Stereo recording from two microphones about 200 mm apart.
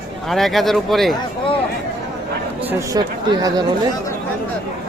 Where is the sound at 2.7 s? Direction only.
15° right (ahead or behind).